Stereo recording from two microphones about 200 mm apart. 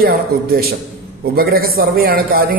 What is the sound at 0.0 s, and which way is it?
A man's voice, 50° right (ahead or behind).